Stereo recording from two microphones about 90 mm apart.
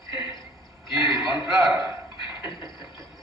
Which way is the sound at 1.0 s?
Centre (ahead or behind).